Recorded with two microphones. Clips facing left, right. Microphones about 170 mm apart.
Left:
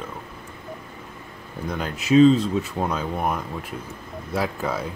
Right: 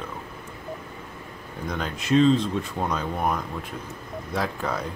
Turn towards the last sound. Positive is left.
turn(degrees=5)  # may be behind; listen again after turning